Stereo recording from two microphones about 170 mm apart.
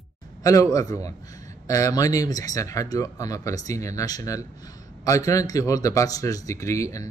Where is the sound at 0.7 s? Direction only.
20° left (ahead or behind).